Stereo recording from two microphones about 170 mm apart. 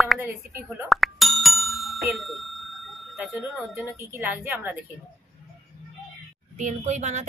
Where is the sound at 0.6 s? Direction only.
Centre (ahead or behind).